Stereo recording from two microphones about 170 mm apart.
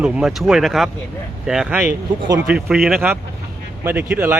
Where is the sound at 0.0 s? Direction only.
5° right (ahead or behind).